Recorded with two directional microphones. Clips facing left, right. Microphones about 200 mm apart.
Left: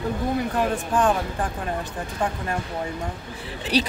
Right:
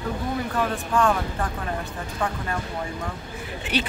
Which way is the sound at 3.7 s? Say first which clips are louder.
Left 4 dB; 35° left (ahead or behind).